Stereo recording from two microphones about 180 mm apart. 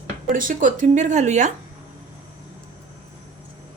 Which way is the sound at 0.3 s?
50° right (ahead or behind).